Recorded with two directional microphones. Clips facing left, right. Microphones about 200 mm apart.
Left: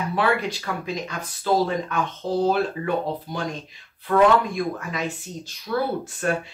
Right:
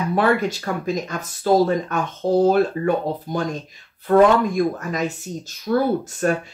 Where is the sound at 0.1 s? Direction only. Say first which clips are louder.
Right 5 dB; 45° right (ahead or behind).